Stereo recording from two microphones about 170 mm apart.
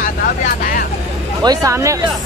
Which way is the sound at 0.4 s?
55° left (ahead or behind).